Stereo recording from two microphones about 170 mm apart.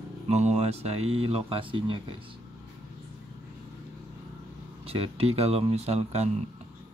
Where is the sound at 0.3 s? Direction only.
40° right (ahead or behind).